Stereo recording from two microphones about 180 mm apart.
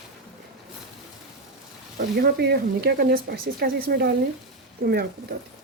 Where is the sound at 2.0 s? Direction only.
55° right (ahead or behind).